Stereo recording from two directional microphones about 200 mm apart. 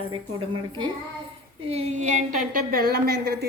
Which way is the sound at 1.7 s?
30° right (ahead or behind).